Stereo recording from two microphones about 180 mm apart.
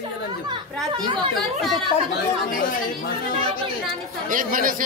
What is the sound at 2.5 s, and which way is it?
Speech, 50° left (ahead or behind).